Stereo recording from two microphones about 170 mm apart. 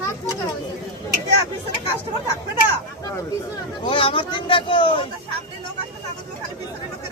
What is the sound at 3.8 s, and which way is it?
Speech, 30° left (ahead or behind).